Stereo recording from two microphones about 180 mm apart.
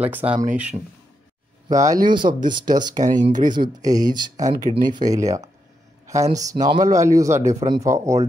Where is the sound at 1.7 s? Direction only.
20° right (ahead or behind).